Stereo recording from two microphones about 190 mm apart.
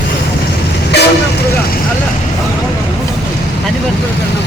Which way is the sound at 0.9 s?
60° left (ahead or behind).